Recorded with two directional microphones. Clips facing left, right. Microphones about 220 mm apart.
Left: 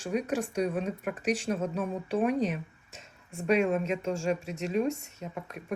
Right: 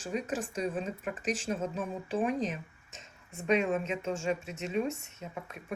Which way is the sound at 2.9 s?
35° left (ahead or behind).